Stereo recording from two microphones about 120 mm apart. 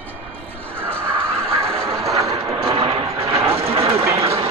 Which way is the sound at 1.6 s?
25° right (ahead or behind).